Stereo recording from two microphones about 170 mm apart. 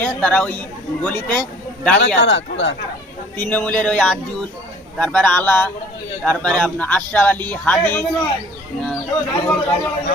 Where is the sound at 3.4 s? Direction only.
10° left (ahead or behind).